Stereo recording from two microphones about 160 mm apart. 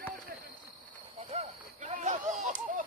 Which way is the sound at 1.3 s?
45° right (ahead or behind).